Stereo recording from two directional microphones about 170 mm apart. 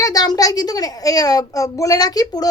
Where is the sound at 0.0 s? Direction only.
20° left (ahead or behind).